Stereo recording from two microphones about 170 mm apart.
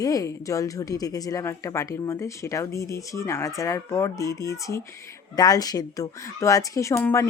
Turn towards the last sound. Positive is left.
turn(degrees=15)  # may be behind; listen again after turning